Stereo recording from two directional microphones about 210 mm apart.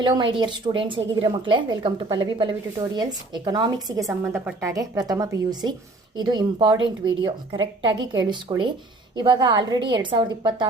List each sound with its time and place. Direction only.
0.0 s a woman's voice: 20° right (ahead or behind)